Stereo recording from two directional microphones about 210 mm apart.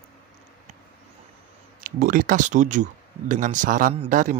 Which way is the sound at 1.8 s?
40° right (ahead or behind).